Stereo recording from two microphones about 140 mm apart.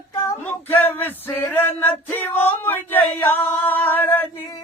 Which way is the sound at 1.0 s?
15° left (ahead or behind).